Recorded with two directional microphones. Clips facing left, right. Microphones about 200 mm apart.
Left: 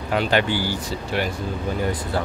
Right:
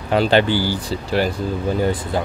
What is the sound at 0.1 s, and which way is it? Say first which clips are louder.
Speech: right 5 dB; 30° right (ahead or behind).